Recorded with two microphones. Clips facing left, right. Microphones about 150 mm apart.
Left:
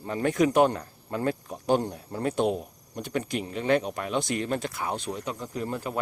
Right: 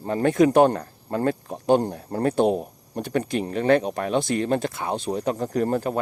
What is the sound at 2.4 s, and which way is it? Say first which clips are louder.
Speech: right 5 dB; 35° right (ahead or behind).